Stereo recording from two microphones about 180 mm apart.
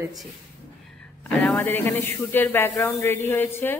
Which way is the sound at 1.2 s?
10° left (ahead or behind).